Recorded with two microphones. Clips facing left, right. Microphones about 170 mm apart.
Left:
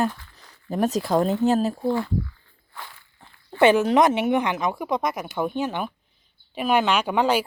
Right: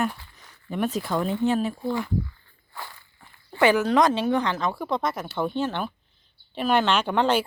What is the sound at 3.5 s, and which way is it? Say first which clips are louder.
Speech: left 3 dB; 25° left (ahead or behind).